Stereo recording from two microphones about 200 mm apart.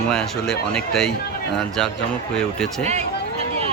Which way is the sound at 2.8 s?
35° right (ahead or behind).